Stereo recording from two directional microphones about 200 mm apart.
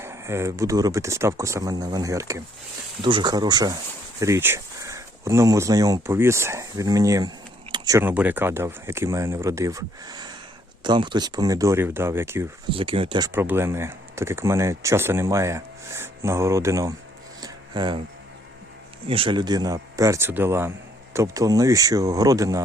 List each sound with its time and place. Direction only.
0.0 s speech: 15° right (ahead or behind)
12.7 s speech: 25° right (ahead or behind)
17.4 s a sound: 20° right (ahead or behind)
19.0 s speech: 25° right (ahead or behind)